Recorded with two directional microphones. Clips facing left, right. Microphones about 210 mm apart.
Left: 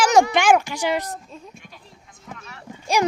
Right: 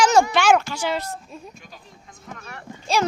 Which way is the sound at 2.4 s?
50° right (ahead or behind).